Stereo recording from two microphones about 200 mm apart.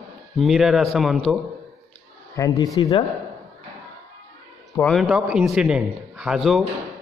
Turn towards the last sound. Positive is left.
turn(degrees=0)  # may be behind; listen again after turning